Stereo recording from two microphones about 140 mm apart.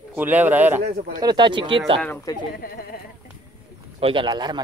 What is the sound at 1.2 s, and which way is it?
Speech, 30° right (ahead or behind).